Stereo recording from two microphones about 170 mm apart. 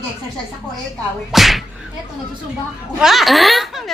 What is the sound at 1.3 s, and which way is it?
Speech, centre (ahead or behind).